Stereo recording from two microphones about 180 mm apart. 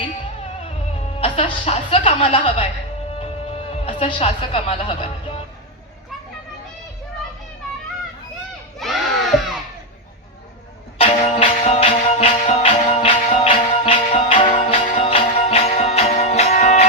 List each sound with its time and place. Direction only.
1.2 s a woman's voice: 35° left (ahead or behind)
8.8 s crowd: centre (ahead or behind)
10.9 s music: 35° left (ahead or behind)